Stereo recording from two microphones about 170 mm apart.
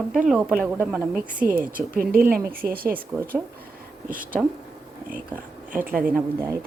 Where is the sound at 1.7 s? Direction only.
55° right (ahead or behind).